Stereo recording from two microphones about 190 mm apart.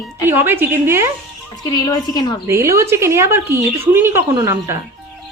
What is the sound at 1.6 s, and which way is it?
Speech, 20° left (ahead or behind).